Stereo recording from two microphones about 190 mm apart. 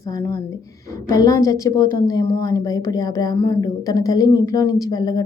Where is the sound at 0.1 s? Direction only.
15° left (ahead or behind).